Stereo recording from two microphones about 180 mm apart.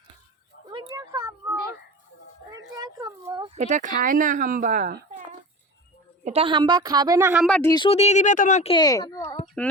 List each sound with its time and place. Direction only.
0.7 s a sound: 25° right (ahead or behind)
2.5 s a sound: 20° right (ahead or behind)
3.5 s speech: 40° right (ahead or behind)
6.2 s a woman's voice: 30° right (ahead or behind)
7.3 s speech: 5° left (ahead or behind)
7.6 s speech: 20° left (ahead or behind)
7.9 s speech: 35° left (ahead or behind)
8.7 s speech: 20° left (ahead or behind)
9.6 s speech: 5° left (ahead or behind)